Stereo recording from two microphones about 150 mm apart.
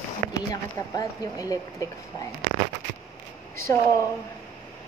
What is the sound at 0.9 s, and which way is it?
Speech, 25° left (ahead or behind).